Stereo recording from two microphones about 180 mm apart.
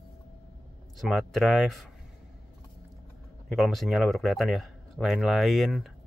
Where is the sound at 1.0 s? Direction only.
Centre (ahead or behind).